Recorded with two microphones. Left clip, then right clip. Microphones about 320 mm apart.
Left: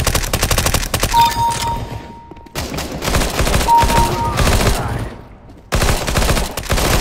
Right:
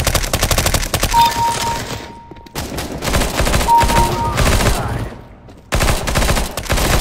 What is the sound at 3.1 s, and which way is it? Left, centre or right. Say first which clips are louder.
Fusillade: even; centre.